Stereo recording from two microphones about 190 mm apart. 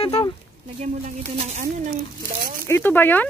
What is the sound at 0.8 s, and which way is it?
Speech, 35° right (ahead or behind).